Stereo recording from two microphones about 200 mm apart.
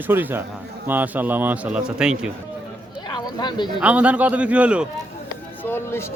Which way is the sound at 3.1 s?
20° left (ahead or behind).